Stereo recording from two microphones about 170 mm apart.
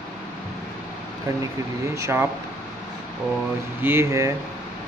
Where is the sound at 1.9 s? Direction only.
15° right (ahead or behind).